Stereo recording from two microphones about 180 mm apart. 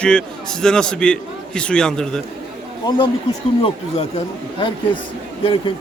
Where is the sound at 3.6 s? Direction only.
35° left (ahead or behind).